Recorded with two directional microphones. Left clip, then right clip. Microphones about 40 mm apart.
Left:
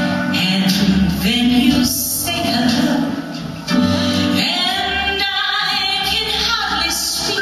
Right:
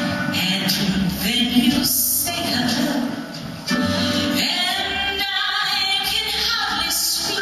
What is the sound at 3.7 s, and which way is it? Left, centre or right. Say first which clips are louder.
Music: left 4 dB; centre.